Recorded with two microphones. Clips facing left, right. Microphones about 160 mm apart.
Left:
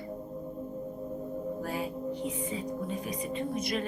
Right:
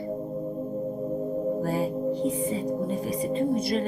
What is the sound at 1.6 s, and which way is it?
Speech, 35° right (ahead or behind).